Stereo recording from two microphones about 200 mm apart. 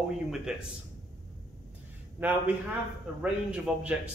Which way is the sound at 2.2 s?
10° right (ahead or behind).